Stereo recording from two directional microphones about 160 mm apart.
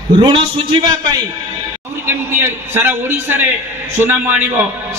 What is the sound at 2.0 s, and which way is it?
A man's voice, 15° right (ahead or behind).